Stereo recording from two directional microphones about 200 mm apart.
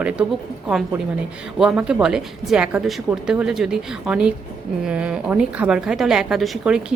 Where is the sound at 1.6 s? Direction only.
5° right (ahead or behind).